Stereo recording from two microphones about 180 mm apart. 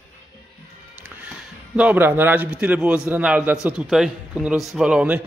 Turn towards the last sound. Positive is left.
turn(degrees=-5)  # may be behind; listen again after turning